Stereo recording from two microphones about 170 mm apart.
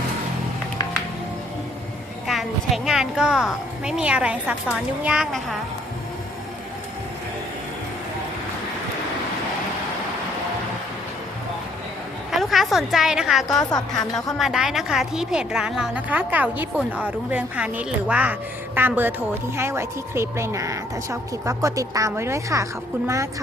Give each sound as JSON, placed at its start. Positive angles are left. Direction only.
{"t": 2.2, "sound": "a woman's voice", "side_deg": 0}
{"t": 12.3, "sound": "a woman's voice", "side_deg": 0}
{"t": 13.5, "sound": "a woman's voice", "side_deg": 20}
{"t": 14.3, "sound": "a woman's voice", "side_deg": -5}